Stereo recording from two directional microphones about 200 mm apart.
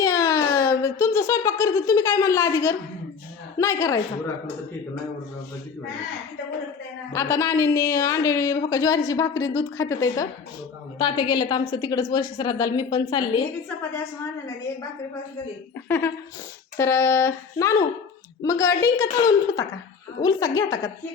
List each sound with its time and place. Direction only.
0.0 s a woman's voice: 15° left (ahead or behind)
7.1 s a woman's voice: 15° left (ahead or behind)
15.9 s a woman's voice: 10° left (ahead or behind)
20.2 s a woman's voice: 15° left (ahead or behind)